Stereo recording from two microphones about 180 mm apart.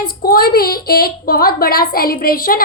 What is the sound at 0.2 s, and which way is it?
Speech, 55° left (ahead or behind).